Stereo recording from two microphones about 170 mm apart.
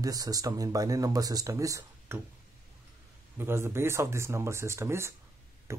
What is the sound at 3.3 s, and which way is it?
Speech, 15° right (ahead or behind).